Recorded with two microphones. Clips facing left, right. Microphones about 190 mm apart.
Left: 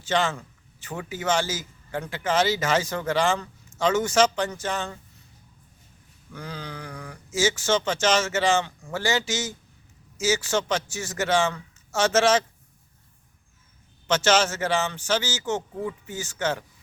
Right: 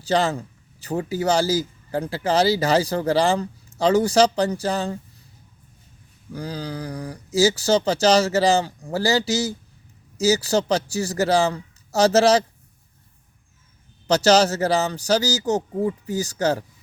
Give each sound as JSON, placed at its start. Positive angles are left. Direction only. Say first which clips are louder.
{"t": 0.0, "sound": "a man's voice", "louder": "right 4 dB", "side_deg": -35}
{"t": 6.3, "sound": "a man's voice", "louder": "right 7 dB", "side_deg": -35}
{"t": 14.1, "sound": "a man's voice", "louder": "right 5 dB", "side_deg": -35}